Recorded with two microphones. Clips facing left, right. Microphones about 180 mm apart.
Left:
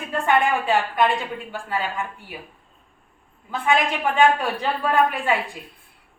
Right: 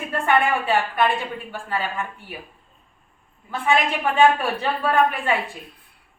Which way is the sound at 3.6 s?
15° left (ahead or behind).